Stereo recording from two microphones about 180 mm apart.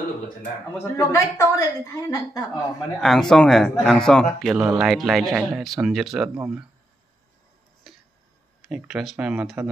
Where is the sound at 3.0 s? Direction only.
5° left (ahead or behind).